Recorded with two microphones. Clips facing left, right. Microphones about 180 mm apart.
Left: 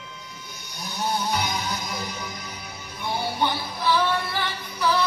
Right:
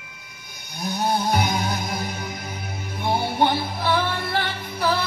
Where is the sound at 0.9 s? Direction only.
55° right (ahead or behind).